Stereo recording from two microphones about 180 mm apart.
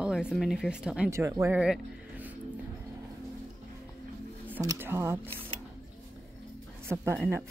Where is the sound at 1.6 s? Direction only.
5° right (ahead or behind).